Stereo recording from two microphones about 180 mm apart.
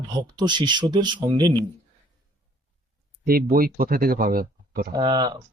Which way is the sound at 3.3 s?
55° right (ahead or behind).